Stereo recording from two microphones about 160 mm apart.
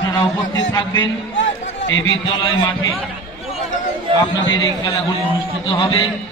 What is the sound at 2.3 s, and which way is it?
Speech, 30° left (ahead or behind).